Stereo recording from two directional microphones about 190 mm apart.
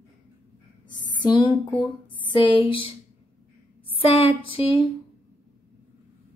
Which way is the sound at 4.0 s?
30° left (ahead or behind).